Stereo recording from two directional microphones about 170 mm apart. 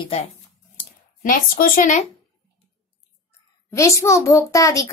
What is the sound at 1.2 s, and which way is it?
Speech, 55° left (ahead or behind).